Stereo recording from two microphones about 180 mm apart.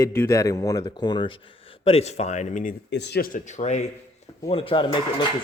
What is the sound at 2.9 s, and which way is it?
Speech, 70° left (ahead or behind).